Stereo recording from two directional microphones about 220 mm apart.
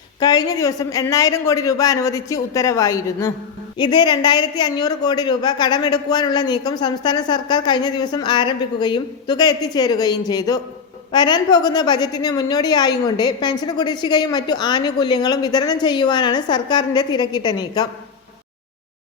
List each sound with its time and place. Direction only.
0.2 s a woman's voice: 15° left (ahead or behind)